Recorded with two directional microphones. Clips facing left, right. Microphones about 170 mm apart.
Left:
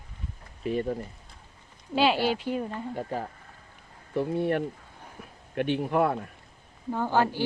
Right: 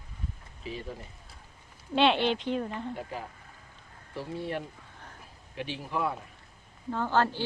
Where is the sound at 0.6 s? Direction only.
55° left (ahead or behind).